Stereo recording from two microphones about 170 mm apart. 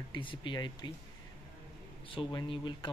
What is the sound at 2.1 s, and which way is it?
Speech, 30° left (ahead or behind).